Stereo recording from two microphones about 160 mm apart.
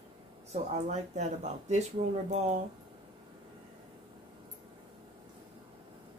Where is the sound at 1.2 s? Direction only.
45° right (ahead or behind).